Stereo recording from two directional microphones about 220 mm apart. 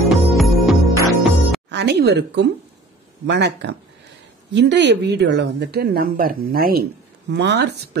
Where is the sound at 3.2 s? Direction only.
50° right (ahead or behind).